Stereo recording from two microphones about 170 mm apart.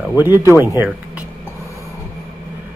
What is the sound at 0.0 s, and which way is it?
Speech, 10° right (ahead or behind).